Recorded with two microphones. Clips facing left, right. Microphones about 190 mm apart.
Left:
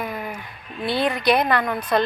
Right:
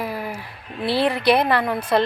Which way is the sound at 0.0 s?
30° right (ahead or behind).